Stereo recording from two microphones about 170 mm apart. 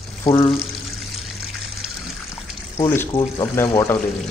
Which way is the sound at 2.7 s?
15° left (ahead or behind).